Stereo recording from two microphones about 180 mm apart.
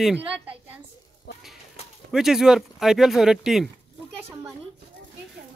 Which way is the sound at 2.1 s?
Centre (ahead or behind).